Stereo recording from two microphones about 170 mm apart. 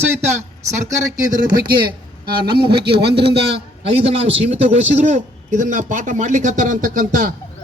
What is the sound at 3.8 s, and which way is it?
A man's voice, 35° right (ahead or behind).